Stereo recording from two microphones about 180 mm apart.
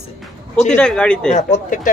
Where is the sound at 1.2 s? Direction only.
40° left (ahead or behind).